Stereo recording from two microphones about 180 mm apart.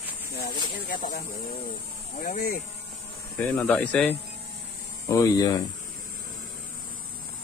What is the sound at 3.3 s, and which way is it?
Speech, 10° left (ahead or behind).